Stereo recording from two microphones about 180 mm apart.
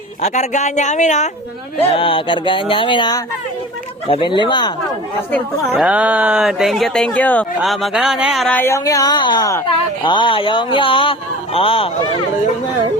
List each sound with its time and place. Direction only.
0.2 s speech: 40° left (ahead or behind)
1.9 s a sound: 30° left (ahead or behind)
5.7 s speech: 5° right (ahead or behind); by 12.2 s 30° left (ahead or behind)